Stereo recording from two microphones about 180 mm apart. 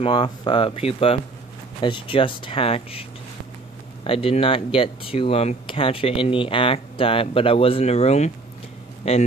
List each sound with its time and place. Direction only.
0.0 s speech: 30° left (ahead or behind)